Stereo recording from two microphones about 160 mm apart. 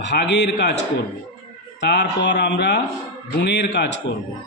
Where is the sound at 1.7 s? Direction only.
90° left.